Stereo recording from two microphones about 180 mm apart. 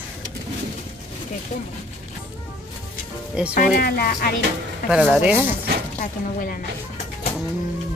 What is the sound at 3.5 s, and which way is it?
Speech, 55° left (ahead or behind).